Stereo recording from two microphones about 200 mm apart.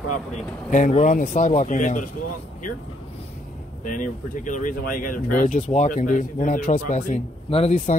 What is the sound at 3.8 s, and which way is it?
Speech, 40° left (ahead or behind).